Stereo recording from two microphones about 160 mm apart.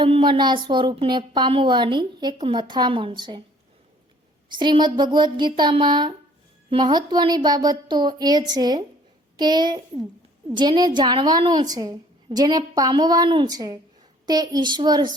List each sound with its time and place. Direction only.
0.0 s speech: 30° right (ahead or behind)
4.4 s speech: 30° right (ahead or behind)